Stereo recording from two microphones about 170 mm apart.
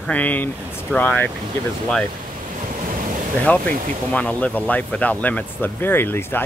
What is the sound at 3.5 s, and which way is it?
Speech, 10° left (ahead or behind).